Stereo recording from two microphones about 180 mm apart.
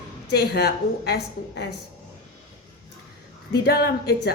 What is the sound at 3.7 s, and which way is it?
Speech, 60° left (ahead or behind).